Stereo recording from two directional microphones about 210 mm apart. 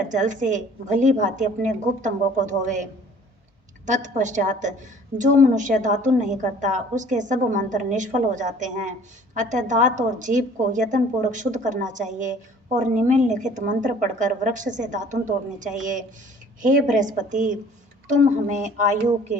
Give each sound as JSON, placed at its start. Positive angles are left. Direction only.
{"t": 0.1, "sound": "a woman's voice", "side_deg": -35}
{"t": 3.8, "sound": "a woman's voice", "side_deg": -35}